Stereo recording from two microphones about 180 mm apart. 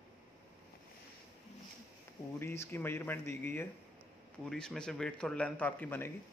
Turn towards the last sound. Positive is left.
turn(degrees=10)  # may be behind; listen again after turning